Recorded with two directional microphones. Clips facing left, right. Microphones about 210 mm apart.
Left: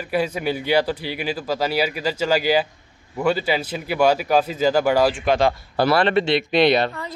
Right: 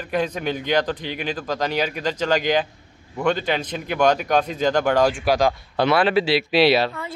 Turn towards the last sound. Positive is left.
turn(degrees=-5)  # may be behind; listen again after turning